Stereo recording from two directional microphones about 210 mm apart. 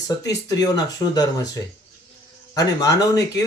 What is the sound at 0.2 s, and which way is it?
Speech, 15° left (ahead or behind).